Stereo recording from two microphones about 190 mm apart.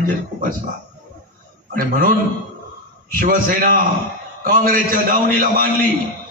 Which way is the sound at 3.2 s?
50° right (ahead or behind).